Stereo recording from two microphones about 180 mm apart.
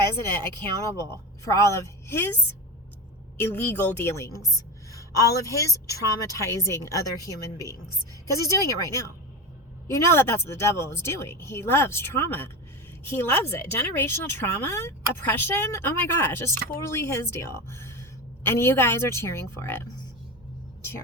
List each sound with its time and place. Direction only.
1.5 s a woman's voice: 15° left (ahead or behind)
8.3 s a woman's voice: 15° left (ahead or behind)